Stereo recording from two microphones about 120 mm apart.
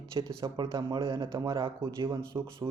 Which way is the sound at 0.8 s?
30° right (ahead or behind).